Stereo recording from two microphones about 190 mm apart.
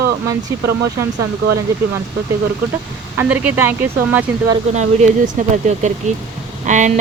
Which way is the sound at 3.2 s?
10° right (ahead or behind).